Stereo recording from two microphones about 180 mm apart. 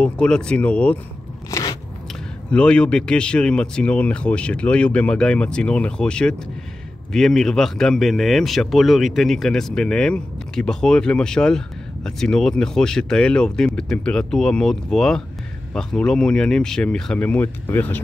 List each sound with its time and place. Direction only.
0.0 s speech: 5° left (ahead or behind)
1.5 s biting: 20° left (ahead or behind)
2.5 s speech: 5° left (ahead or behind)